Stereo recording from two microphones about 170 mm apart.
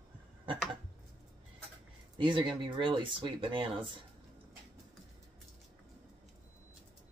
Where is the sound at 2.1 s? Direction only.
30° right (ahead or behind).